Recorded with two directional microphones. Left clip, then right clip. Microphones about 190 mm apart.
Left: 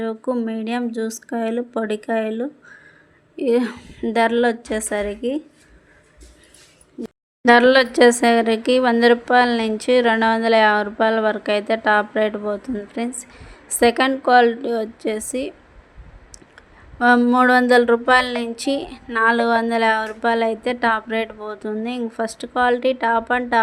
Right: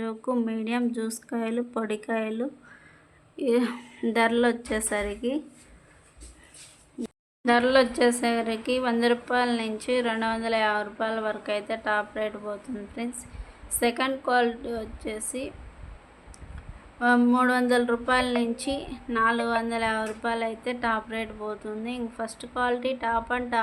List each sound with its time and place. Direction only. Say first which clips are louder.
0.0 s speech: left 6 dB; 15° left (ahead or behind)
7.4 s speech: left 8 dB; 40° left (ahead or behind)
17.0 s speech: left 7 dB; 35° left (ahead or behind)